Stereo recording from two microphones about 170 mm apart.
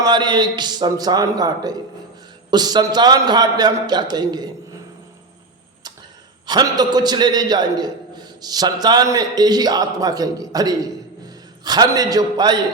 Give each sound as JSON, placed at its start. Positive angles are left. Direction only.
{"t": 0.0, "sound": "a man's voice", "side_deg": -25}
{"t": 6.4, "sound": "a man's voice", "side_deg": -25}